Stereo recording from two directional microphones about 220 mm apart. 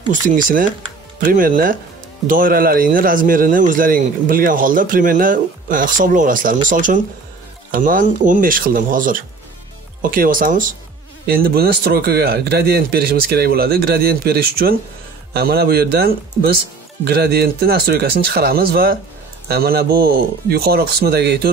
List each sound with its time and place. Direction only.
0.1 s a man's voice: 35° right (ahead or behind)